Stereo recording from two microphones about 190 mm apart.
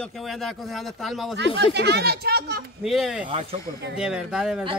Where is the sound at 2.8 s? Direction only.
Centre (ahead or behind).